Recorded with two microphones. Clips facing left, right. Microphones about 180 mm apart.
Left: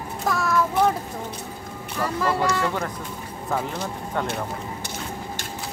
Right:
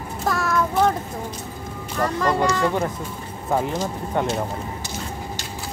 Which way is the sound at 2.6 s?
15° right (ahead or behind).